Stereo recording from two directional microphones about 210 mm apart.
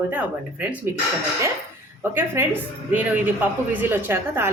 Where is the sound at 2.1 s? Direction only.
10° right (ahead or behind).